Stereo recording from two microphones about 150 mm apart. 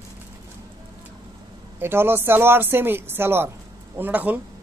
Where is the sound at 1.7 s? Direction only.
15° right (ahead or behind).